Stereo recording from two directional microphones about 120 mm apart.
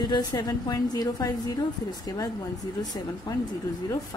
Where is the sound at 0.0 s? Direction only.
35° left (ahead or behind).